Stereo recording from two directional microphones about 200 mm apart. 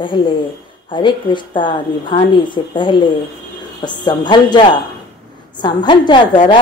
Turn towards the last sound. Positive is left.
turn(degrees=25)  # may be behind; listen again after turning